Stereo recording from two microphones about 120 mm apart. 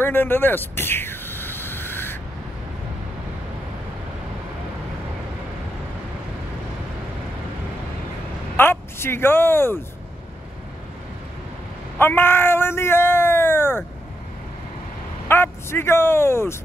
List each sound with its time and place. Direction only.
0.0 s a sound: 15° left (ahead or behind)
8.5 s speech: 20° left (ahead or behind)
12.0 s speech: 20° left (ahead or behind)
15.2 s speech: 20° left (ahead or behind)